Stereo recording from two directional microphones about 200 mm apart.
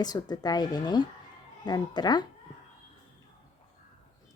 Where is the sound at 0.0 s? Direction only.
20° left (ahead or behind).